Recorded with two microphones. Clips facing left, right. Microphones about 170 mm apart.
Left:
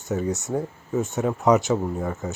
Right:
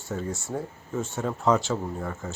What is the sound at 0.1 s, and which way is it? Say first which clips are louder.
Speech: left 6 dB; 20° left (ahead or behind).